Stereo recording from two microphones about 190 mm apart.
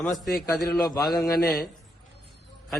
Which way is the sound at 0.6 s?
20° left (ahead or behind).